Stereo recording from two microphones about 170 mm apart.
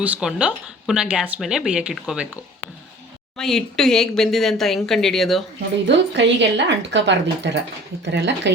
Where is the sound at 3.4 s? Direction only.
Centre (ahead or behind).